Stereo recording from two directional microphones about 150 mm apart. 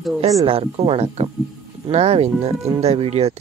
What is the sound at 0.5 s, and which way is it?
Speech, 40° right (ahead or behind).